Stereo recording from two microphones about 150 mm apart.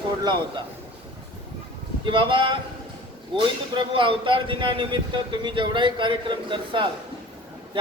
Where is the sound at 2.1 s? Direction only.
35° right (ahead or behind).